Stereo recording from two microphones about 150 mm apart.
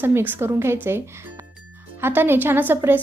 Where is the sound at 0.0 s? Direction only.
15° right (ahead or behind).